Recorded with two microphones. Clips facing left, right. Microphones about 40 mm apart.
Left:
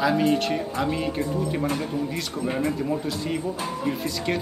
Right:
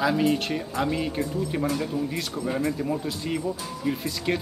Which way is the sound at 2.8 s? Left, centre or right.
Centre.